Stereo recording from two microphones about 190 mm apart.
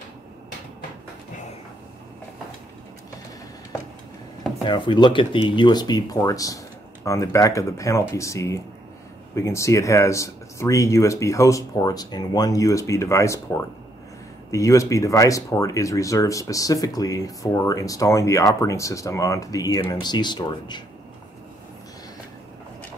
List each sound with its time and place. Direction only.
4.6 s speech: 25° left (ahead or behind)